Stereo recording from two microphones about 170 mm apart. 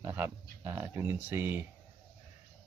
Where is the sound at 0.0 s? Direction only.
10° right (ahead or behind).